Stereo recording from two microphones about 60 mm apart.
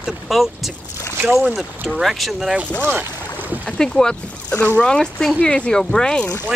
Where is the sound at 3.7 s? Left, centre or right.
Centre.